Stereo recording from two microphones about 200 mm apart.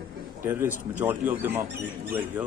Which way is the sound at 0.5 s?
10° right (ahead or behind).